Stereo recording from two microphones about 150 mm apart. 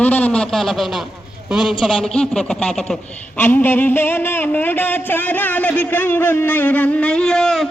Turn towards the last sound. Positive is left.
turn(degrees=0)  # may be behind; listen again after turning